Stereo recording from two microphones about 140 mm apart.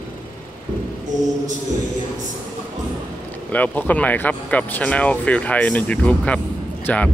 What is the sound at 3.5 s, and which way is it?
Speech, 10° left (ahead or behind).